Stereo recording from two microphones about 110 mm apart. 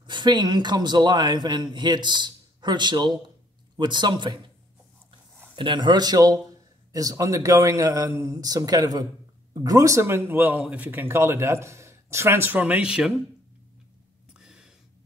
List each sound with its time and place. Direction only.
0.0 s a man's voice: 45° right (ahead or behind)
5.6 s a man's voice: 45° right (ahead or behind); by 13.1 s 10° right (ahead or behind)
14.3 s a sound: 5° right (ahead or behind)